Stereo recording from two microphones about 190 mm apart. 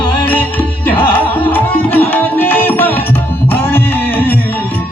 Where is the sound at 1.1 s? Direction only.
10° left (ahead or behind).